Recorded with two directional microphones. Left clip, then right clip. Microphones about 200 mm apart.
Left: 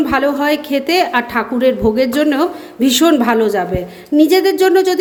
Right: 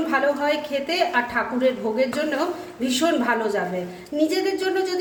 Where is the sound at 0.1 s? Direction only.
50° left (ahead or behind).